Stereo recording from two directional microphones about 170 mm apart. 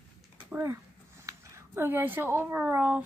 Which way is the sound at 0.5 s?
15° right (ahead or behind).